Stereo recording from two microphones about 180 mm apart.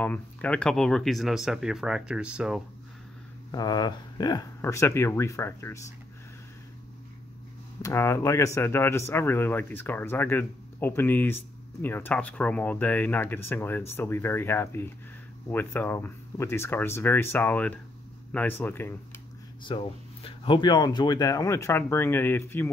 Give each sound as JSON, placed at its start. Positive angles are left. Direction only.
{"t": 0.0, "sound": "speech", "side_deg": 5}
{"t": 3.5, "sound": "speech", "side_deg": 20}
{"t": 7.8, "sound": "speech", "side_deg": 15}
{"t": 19.7, "sound": "speech", "side_deg": 25}